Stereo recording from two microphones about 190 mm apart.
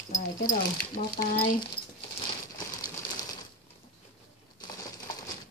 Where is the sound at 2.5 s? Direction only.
20° left (ahead or behind).